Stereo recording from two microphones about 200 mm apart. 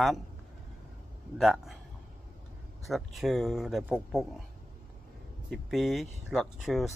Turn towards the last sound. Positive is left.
turn(degrees=0)  # may be behind; listen again after turning